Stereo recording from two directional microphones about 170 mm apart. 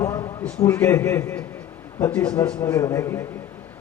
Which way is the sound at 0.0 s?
20° left (ahead or behind).